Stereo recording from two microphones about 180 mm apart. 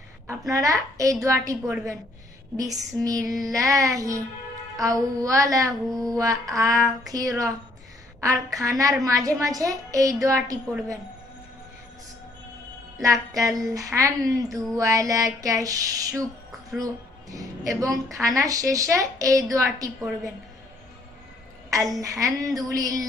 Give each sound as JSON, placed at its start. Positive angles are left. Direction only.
{"t": 0.3, "sound": "a woman's voice", "side_deg": -15}
{"t": 3.0, "sound": "a woman's voice", "side_deg": -20}
{"t": 4.7, "sound": "a sound", "side_deg": -20}
{"t": 10.2, "sound": "a woman's voice", "side_deg": -15}
{"t": 12.9, "sound": "a sound", "side_deg": -20}
{"t": 16.7, "sound": "speech", "side_deg": -20}
{"t": 18.0, "sound": "a woman's voice", "side_deg": 0}
{"t": 18.3, "sound": "a woman's voice", "side_deg": -20}
{"t": 22.0, "sound": "a sound", "side_deg": -20}